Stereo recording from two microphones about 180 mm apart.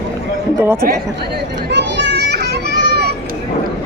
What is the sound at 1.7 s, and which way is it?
Children playing, 70° right (ahead or behind).